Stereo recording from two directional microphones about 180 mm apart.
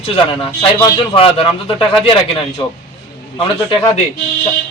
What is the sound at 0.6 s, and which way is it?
A man's voice, 25° left (ahead or behind).